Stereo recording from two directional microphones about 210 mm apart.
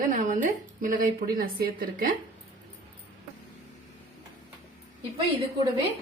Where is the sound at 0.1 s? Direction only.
40° right (ahead or behind).